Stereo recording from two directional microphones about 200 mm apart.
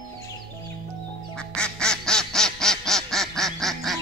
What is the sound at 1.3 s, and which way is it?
Duck, 5° left (ahead or behind).